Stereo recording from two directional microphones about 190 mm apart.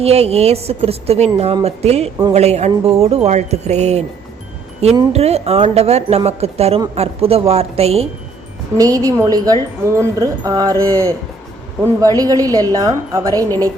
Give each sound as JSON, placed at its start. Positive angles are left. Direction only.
{"t": 0.0, "sound": "a woman's voice", "side_deg": -35}
{"t": 8.8, "sound": "a woman's voice", "side_deg": -15}